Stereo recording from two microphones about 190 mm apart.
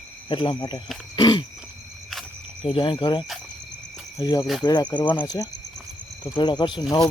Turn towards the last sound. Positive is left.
turn(degrees=25)  # may be behind; listen again after turning